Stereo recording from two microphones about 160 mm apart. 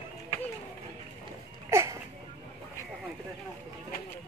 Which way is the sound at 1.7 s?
15° right (ahead or behind).